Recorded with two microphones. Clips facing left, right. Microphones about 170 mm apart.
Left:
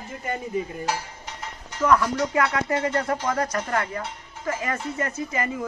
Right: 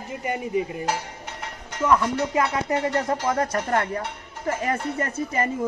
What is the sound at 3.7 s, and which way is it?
Speech, 35° right (ahead or behind).